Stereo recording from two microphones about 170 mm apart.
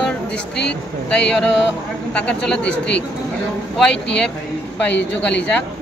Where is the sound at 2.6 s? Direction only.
90° left.